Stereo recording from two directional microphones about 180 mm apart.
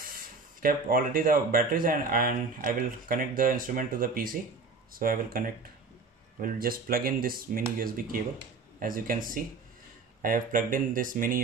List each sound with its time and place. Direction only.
0.0 s speech: 55° right (ahead or behind)
6.4 s speech: 55° right (ahead or behind)